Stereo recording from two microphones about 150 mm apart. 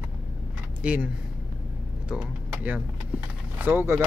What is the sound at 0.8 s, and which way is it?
Speech, 5° right (ahead or behind).